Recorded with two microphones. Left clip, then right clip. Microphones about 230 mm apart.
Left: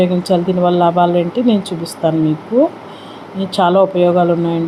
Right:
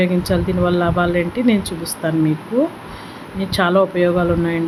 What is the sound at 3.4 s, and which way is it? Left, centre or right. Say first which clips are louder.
Speech: left 4 dB; centre.